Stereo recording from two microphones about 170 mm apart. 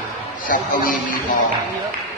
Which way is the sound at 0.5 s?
55° left (ahead or behind).